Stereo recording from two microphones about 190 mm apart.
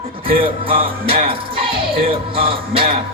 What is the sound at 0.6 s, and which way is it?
Music, 30° right (ahead or behind).